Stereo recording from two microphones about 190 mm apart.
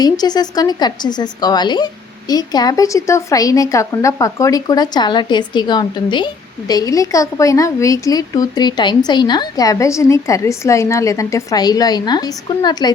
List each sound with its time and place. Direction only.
0.0 s a woman's voice: 20° left (ahead or behind)